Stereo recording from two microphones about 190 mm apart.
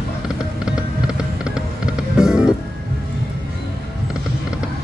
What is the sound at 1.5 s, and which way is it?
Music, 5° right (ahead or behind).